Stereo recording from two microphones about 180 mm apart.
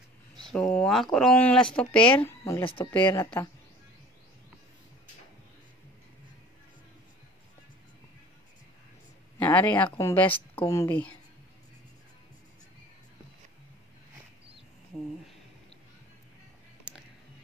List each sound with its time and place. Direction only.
0.5 s speech: 5° left (ahead or behind)
2.6 s speech: 30° left (ahead or behind)
9.4 s speech: 10° left (ahead or behind)